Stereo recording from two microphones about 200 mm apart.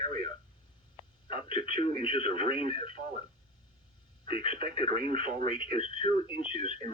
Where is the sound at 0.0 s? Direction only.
25° left (ahead or behind).